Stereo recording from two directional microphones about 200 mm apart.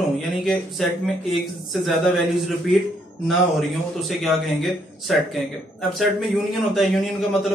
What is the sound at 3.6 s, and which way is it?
Speech, centre (ahead or behind).